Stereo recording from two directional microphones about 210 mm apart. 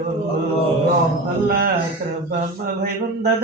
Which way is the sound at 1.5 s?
45° right (ahead or behind).